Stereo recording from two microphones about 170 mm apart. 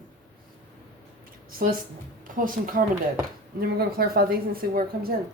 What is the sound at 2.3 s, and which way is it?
A woman's voice, 55° right (ahead or behind).